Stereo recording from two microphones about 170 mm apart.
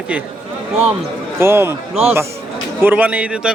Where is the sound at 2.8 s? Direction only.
10° right (ahead or behind).